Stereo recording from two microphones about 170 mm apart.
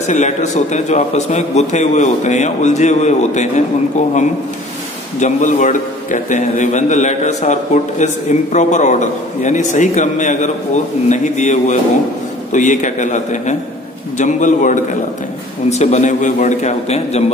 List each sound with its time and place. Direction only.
0.0 s a man's voice: 45° left (ahead or behind)
5.2 s a man's voice: 45° left (ahead or behind)